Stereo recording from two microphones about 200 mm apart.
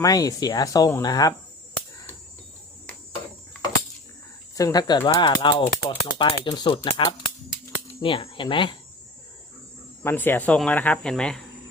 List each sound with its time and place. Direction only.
0.0 s speech: 20° left (ahead or behind)
4.5 s speech: 20° left (ahead or behind)
8.0 s speech: 25° left (ahead or behind)
10.0 s speech: 10° left (ahead or behind)